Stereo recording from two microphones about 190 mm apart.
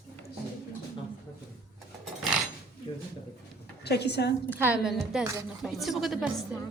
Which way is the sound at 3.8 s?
60° left (ahead or behind).